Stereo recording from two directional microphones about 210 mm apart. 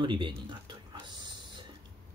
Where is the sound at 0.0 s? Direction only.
25° right (ahead or behind).